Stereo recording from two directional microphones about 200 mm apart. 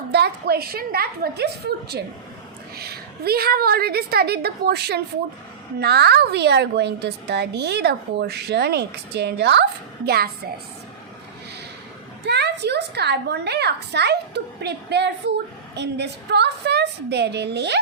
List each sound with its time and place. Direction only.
0.1 s a woman's voice: 55° right (ahead or behind)
12.2 s a woman's voice: 55° right (ahead or behind)